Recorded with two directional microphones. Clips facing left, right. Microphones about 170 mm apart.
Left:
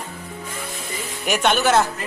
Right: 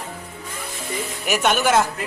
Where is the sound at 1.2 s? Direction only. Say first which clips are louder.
Left 1 dB; 5° right (ahead or behind).